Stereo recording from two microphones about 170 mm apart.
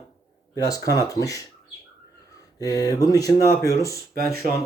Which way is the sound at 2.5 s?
20° left (ahead or behind).